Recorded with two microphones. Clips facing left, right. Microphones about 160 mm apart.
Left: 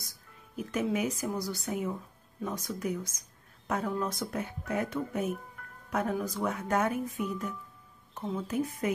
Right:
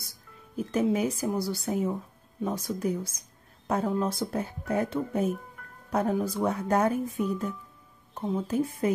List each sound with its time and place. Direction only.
0.6 s a woman's voice: 30° right (ahead or behind)